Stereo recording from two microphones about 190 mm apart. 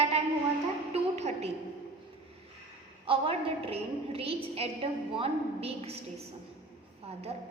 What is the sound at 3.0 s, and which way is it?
A woman's voice, 30° right (ahead or behind).